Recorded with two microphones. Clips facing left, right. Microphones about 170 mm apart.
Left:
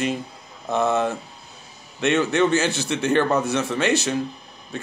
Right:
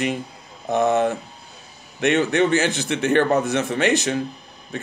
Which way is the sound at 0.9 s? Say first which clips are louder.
Right 3 dB; 60° right (ahead or behind).